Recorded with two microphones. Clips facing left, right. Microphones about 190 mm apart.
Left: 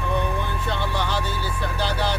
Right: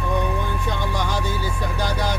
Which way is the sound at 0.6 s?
15° right (ahead or behind).